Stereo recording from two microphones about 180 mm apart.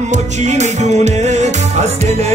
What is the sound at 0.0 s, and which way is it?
Music, 40° right (ahead or behind).